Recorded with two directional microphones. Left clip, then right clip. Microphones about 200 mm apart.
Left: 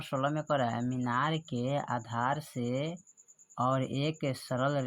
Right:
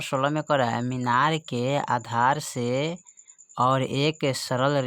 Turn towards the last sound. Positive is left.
turn(degrees=-40)  # may be behind; listen again after turning